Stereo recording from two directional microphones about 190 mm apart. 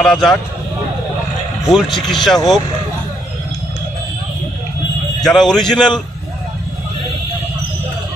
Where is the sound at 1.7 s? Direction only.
Centre (ahead or behind).